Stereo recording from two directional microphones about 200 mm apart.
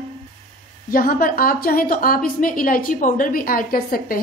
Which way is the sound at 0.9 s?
45° left (ahead or behind).